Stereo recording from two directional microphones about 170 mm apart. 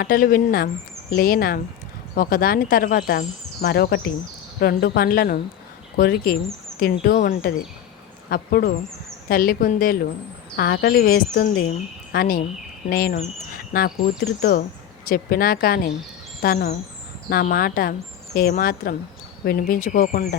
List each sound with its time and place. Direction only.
0.0 s speech: 60° left (ahead or behind)
15.0 s speech: 60° left (ahead or behind)